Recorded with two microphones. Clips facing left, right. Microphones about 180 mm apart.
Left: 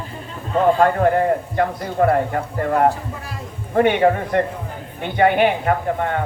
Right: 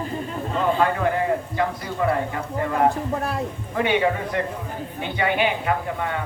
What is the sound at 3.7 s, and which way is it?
A man's voice, 50° left (ahead or behind).